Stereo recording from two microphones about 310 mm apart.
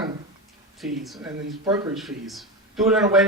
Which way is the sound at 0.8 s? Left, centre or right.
Centre.